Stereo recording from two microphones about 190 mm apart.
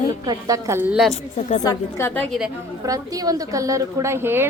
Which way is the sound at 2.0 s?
15° left (ahead or behind).